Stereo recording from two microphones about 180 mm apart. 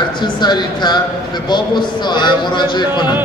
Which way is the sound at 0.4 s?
25° left (ahead or behind).